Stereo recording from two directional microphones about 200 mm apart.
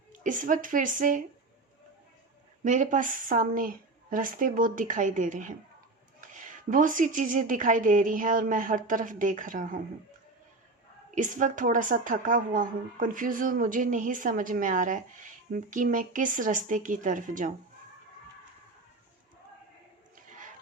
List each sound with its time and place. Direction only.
0.1 s a woman's voice: 40° right (ahead or behind)
2.6 s a woman's voice: 40° right (ahead or behind)
11.1 s a woman's voice: 40° right (ahead or behind)